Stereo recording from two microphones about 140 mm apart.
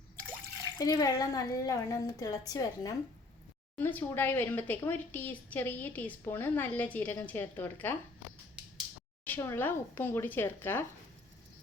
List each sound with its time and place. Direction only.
0.8 s a woman's voice: 25° left (ahead or behind)
3.8 s speech: 15° left (ahead or behind)
9.2 s speech: 15° left (ahead or behind)